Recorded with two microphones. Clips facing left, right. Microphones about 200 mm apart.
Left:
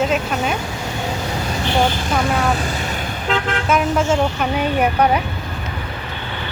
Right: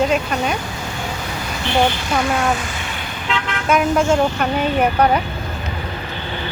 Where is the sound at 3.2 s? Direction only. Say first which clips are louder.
Left 3 dB; 45° left (ahead or behind).